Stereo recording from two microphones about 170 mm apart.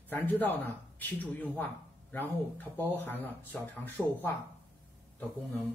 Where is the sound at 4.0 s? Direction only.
5° right (ahead or behind).